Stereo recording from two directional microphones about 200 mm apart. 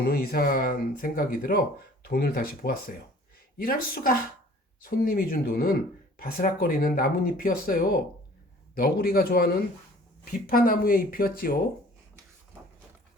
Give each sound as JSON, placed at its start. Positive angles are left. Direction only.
{"t": 0.0, "sound": "speech", "side_deg": 45}